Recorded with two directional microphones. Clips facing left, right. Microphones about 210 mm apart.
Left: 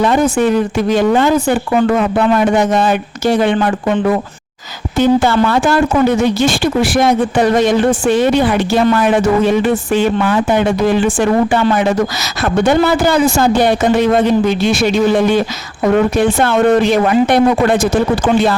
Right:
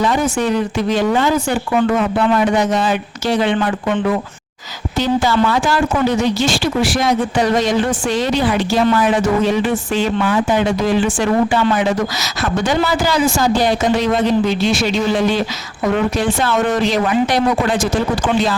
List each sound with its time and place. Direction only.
0.0 s speech: 55° left (ahead or behind); by 4.1 s 40° left (ahead or behind)
4.9 s a man's voice: 55° left (ahead or behind)